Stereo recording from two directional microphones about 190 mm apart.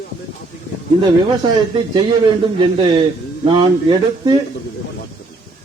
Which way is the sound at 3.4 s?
25° right (ahead or behind).